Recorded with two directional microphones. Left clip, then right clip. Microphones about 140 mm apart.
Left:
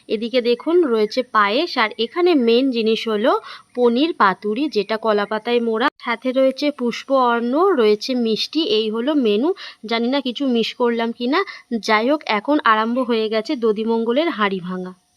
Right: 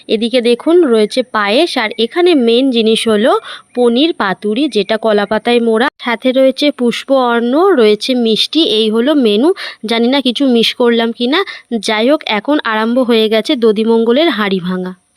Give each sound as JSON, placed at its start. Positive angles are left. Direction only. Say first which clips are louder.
{"t": 0.1, "sound": "speech", "louder": "right 7 dB", "side_deg": -35}
{"t": 3.8, "sound": "speech", "louder": "right 5 dB", "side_deg": -25}
{"t": 12.6, "sound": "speech", "louder": "right 4 dB", "side_deg": -30}
{"t": 13.8, "sound": "speech", "louder": "right 9 dB", "side_deg": -20}
{"t": 14.1, "sound": "speech", "louder": "right 7 dB", "side_deg": -35}